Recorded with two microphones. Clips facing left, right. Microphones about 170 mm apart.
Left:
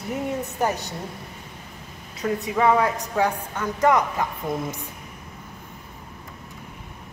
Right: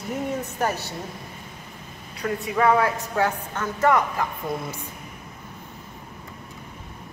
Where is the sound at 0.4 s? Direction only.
15° left (ahead or behind).